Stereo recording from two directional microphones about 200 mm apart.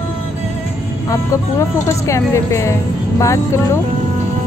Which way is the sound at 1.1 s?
15° left (ahead or behind).